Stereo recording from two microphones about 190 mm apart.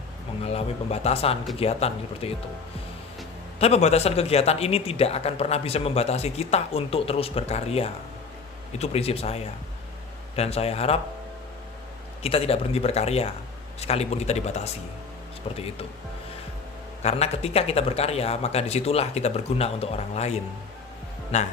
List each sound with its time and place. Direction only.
0.4 s speech: 35° left (ahead or behind)
3.6 s speech: 35° left (ahead or behind)
12.2 s speech: 30° left (ahead or behind)
17.0 s speech: 35° left (ahead or behind)